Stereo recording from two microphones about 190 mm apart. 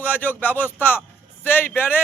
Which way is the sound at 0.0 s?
10° left (ahead or behind).